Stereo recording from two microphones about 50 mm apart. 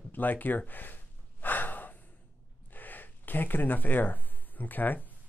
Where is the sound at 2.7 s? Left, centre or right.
Left.